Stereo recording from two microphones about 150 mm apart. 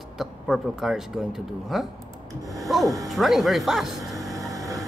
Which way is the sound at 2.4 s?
20° right (ahead or behind).